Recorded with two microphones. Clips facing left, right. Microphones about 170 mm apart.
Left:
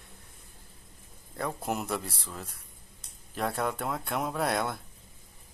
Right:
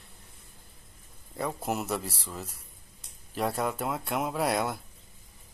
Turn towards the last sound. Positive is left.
turn(degrees=-5)  # may be behind; listen again after turning